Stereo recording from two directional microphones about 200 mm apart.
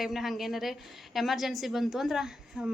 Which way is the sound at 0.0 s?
Centre (ahead or behind).